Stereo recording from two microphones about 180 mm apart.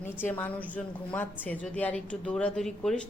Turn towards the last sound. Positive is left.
turn(degrees=5)  # may be behind; listen again after turning